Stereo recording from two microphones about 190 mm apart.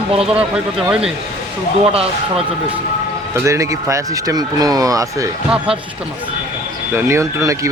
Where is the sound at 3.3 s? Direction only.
15° right (ahead or behind).